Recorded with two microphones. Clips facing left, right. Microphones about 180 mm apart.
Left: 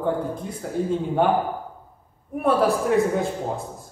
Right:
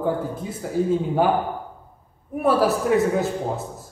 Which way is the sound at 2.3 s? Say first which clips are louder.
Right 1 dB; 5° right (ahead or behind).